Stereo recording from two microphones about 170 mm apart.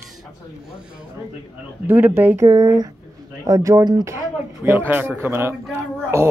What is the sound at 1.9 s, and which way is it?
Speech, 10° right (ahead or behind).